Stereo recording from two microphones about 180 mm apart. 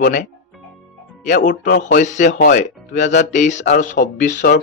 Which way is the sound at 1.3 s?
45° left (ahead or behind).